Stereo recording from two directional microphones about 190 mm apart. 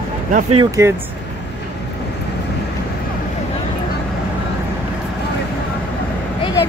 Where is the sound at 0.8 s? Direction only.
15° right (ahead or behind).